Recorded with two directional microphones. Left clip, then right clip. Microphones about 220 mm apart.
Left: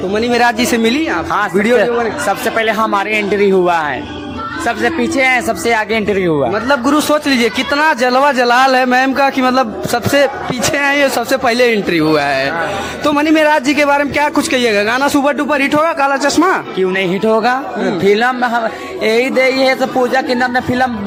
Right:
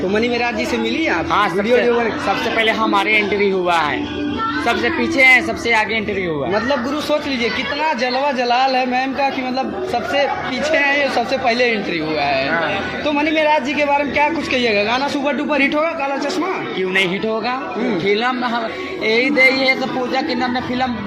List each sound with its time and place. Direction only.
0.3 s a man's voice: 40° left (ahead or behind)